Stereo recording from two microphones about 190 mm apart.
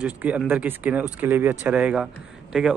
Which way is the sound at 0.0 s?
5° right (ahead or behind).